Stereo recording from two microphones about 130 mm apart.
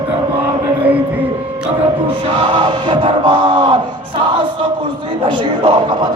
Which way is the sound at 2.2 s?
40° right (ahead or behind).